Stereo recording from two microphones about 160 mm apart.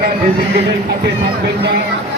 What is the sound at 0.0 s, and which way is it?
Speech, 75° right (ahead or behind).